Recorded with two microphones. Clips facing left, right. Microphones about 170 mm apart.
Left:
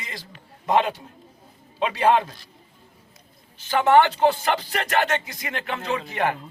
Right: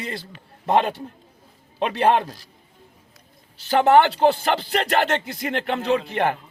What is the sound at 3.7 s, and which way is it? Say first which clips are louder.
Speech: right 2 dB; 35° right (ahead or behind).